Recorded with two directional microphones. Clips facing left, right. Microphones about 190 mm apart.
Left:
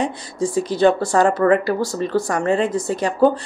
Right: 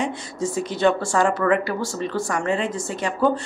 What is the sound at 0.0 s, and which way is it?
A woman's voice, 35° left (ahead or behind).